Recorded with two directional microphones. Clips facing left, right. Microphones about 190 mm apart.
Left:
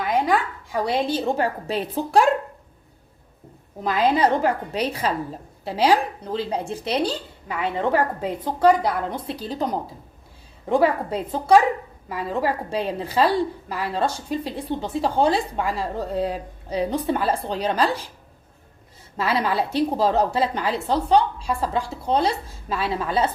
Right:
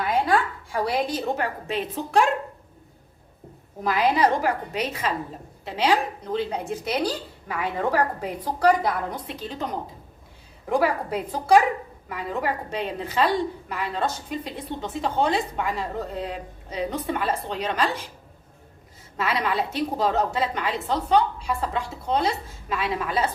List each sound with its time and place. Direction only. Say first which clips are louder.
0.1 s a woman's voice: left 1 dB; 15° left (ahead or behind); by 2.2 s 35° left (ahead or behind)
3.8 s a woman's voice: left 2 dB; 25° left (ahead or behind)
10.7 s a woman's voice: left 3 dB; 25° left (ahead or behind)
19.1 s a woman's voice: left 3 dB; 30° left (ahead or behind)